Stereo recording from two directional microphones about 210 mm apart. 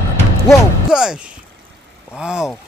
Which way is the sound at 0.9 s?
5° right (ahead or behind).